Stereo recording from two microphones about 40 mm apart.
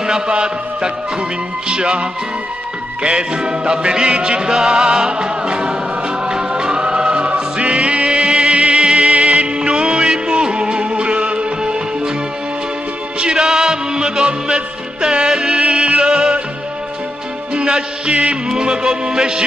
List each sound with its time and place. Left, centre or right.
0.0 s music: right
13.2 s music: centre
17.6 s music: right